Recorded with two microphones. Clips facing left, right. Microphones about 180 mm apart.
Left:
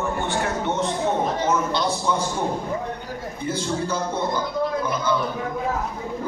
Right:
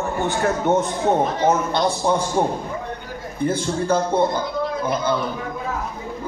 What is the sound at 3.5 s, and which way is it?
Speech, 55° right (ahead or behind).